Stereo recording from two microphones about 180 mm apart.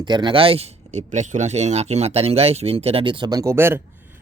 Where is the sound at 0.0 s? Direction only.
25° right (ahead or behind).